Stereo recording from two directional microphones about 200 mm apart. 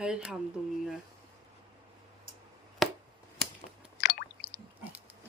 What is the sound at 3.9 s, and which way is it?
Squish, 55° left (ahead or behind).